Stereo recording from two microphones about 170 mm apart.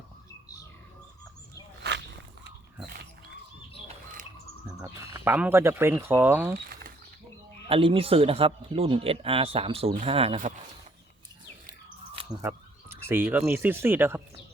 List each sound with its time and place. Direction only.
1.8 s walk: 75° right (ahead or behind)
3.8 s chirp: 50° right (ahead or behind)
4.8 s speech: 15° right (ahead or behind)
7.7 s speech: 30° right (ahead or behind)
12.4 s speech: 15° right (ahead or behind)